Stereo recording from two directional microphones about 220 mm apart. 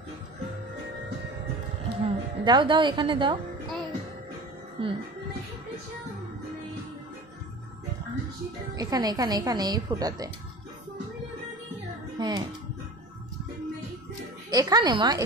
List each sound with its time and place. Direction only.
2.0 s a woman's voice: 20° right (ahead or behind)
4.8 s speech: 25° right (ahead or behind)
8.7 s speech: 15° right (ahead or behind)
12.2 s a child's voice: 20° right (ahead or behind)
14.5 s speech: 15° right (ahead or behind)